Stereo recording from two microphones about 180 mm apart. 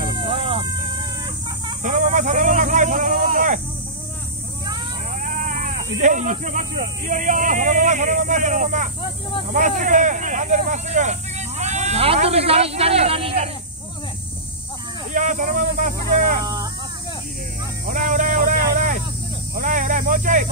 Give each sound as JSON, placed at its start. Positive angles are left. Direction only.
{"t": 0.2, "sound": "vehicle", "side_deg": -30}
{"t": 1.8, "sound": "a sound", "side_deg": -45}
{"t": 5.1, "sound": "speech", "side_deg": -45}
{"t": 15.1, "sound": "speech", "side_deg": -45}
{"t": 17.8, "sound": "a sound", "side_deg": -45}
{"t": 19.5, "sound": "snake", "side_deg": -45}